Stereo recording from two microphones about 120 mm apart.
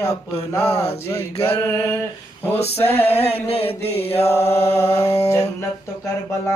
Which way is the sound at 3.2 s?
55° left (ahead or behind).